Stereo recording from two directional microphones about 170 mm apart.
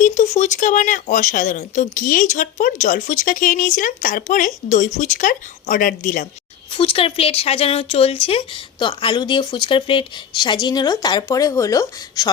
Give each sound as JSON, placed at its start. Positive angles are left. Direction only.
{"t": 0.0, "sound": "speech", "side_deg": 45}
{"t": 6.7, "sound": "speech", "side_deg": 30}